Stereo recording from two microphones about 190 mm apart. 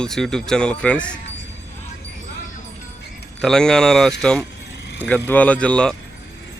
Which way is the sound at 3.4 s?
5° left (ahead or behind).